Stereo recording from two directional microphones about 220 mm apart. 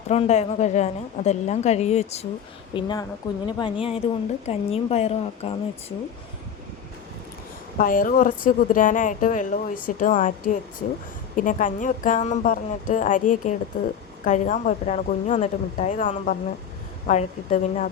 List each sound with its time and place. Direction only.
0.1 s speech: 30° left (ahead or behind)
2.7 s speech: 20° left (ahead or behind)
7.8 s speech: 40° left (ahead or behind)